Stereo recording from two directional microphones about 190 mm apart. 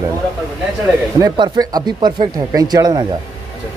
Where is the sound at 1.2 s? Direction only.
20° right (ahead or behind).